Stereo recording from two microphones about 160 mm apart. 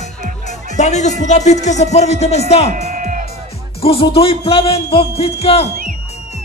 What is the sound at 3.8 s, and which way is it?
Speech, 35° left (ahead or behind).